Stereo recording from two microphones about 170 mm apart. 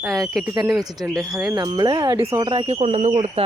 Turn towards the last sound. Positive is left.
turn(degrees=-35)  # may be behind; listen again after turning